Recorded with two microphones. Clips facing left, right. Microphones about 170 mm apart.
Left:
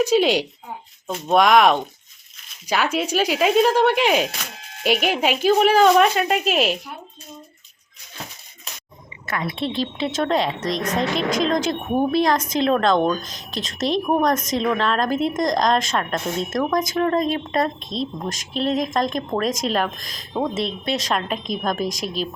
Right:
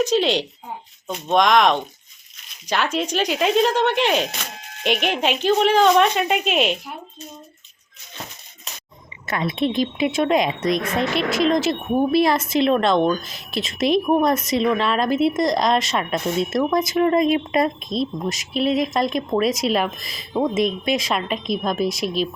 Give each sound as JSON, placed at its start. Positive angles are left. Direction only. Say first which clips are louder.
{"t": 0.0, "sound": "speech", "louder": "left 2 dB", "side_deg": 10}
{"t": 9.2, "sound": "a woman's voice", "louder": "right 3 dB", "side_deg": -20}